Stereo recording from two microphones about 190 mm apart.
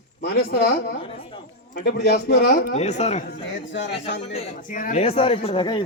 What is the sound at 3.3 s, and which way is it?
Speech, 70° left (ahead or behind).